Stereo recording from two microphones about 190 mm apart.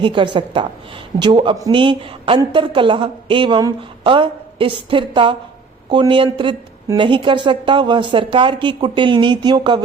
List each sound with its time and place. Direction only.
0.0 s a woman's voice: 25° right (ahead or behind)